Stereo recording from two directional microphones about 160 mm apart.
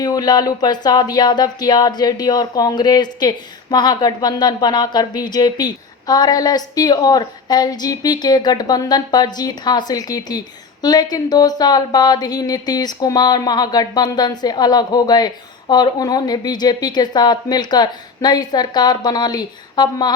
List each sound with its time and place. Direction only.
0.0 s speech: 25° left (ahead or behind)